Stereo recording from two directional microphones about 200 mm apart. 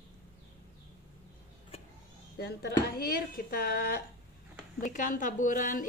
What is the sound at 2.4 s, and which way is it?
A woman's voice, 50° left (ahead or behind).